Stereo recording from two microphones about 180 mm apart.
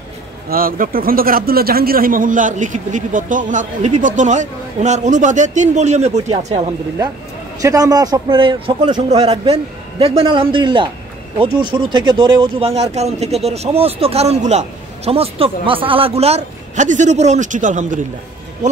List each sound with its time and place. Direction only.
0.5 s speech: 50° right (ahead or behind); by 6.7 s 35° right (ahead or behind)
7.6 s a man's voice: 20° right (ahead or behind); by 18.0 s 45° right (ahead or behind)